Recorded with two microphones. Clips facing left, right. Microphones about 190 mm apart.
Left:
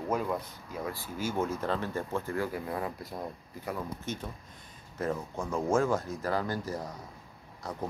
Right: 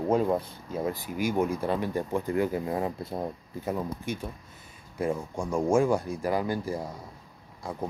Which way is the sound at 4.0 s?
10° right (ahead or behind).